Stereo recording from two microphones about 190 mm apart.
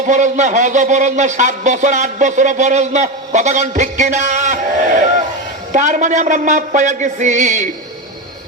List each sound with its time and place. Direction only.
0.1 s a man's voice: 40° right (ahead or behind)